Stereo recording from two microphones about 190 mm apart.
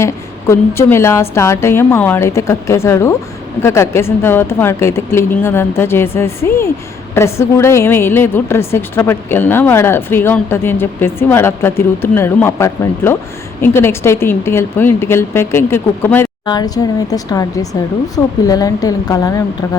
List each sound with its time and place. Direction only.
0.0 s a woman's voice: 15° left (ahead or behind)